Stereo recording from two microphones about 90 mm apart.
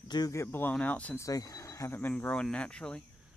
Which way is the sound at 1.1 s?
40° left (ahead or behind).